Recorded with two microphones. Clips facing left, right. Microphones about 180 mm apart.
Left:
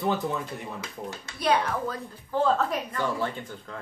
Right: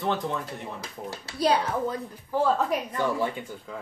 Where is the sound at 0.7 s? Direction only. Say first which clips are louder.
Even; 35° right (ahead or behind).